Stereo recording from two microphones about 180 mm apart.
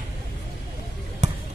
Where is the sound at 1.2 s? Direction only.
40° right (ahead or behind).